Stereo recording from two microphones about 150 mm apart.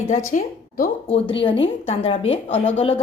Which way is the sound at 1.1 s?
35° left (ahead or behind).